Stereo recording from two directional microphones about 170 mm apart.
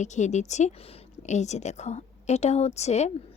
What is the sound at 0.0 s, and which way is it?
Speech, 45° left (ahead or behind).